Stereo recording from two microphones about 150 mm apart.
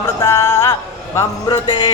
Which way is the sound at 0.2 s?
15° left (ahead or behind).